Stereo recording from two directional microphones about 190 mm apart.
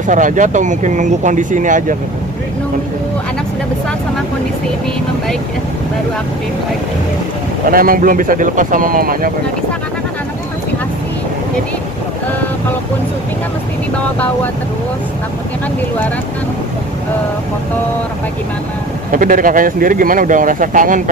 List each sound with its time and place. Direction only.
0.0 s speech: 40° right (ahead or behind)
7.7 s speech: 50° right (ahead or behind)
19.1 s speech: 45° right (ahead or behind)